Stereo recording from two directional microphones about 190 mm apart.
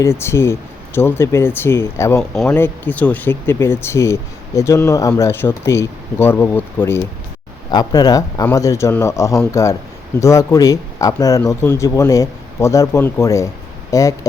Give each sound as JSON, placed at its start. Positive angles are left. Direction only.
{"t": 0.0, "sound": "speech", "side_deg": 15}
{"t": 2.3, "sound": "speech", "side_deg": 0}